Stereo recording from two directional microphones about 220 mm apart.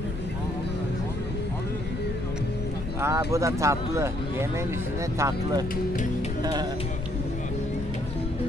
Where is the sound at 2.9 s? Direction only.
10° right (ahead or behind).